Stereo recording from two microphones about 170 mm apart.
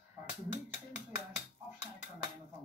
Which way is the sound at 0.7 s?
45° left (ahead or behind).